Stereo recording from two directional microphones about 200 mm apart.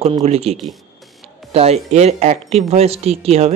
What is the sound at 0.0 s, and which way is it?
Speech, 30° right (ahead or behind).